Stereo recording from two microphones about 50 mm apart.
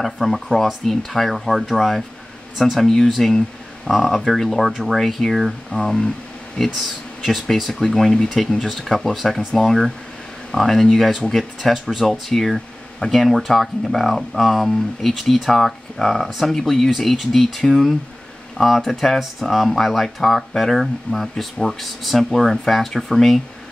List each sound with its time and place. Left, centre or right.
0.0 s speech: centre
7.5 s speech: centre